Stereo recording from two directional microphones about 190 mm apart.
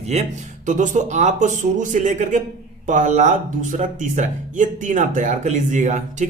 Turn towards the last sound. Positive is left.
turn(degrees=-40)  # may be behind; listen again after turning